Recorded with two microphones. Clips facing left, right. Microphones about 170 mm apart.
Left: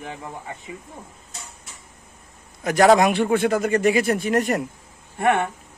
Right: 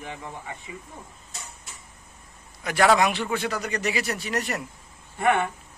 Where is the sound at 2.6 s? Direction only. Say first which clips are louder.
Left 5 dB; 45° left (ahead or behind).